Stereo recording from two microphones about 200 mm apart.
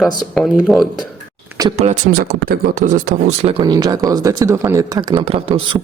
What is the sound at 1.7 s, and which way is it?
Speech, 40° right (ahead or behind).